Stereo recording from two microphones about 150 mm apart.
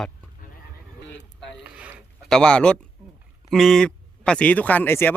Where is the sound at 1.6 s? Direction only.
10° right (ahead or behind).